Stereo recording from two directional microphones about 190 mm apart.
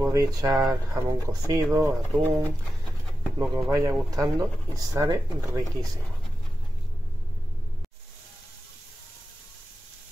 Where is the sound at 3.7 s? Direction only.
15° right (ahead or behind).